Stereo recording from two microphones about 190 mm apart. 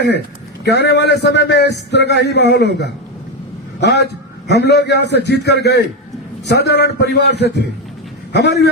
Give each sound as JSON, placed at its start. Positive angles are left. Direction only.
{"t": 0.6, "sound": "a man's voice", "side_deg": 60}